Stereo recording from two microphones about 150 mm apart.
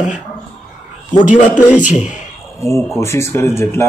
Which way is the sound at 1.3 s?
10° right (ahead or behind).